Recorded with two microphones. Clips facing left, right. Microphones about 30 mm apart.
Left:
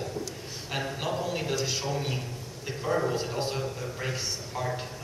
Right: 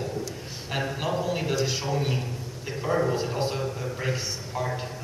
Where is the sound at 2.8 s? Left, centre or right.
Centre.